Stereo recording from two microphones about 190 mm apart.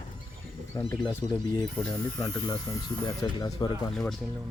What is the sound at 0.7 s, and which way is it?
Speech, 20° left (ahead or behind).